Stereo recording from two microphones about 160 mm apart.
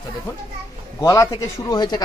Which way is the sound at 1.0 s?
20° left (ahead or behind).